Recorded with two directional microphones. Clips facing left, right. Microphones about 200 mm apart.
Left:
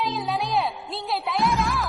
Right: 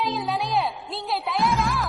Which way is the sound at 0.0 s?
Centre (ahead or behind).